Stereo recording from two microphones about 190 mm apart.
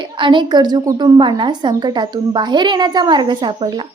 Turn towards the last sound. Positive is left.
turn(degrees=-25)  # may be behind; listen again after turning